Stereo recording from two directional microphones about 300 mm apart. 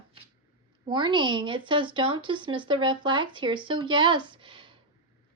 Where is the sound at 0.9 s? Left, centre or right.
Centre.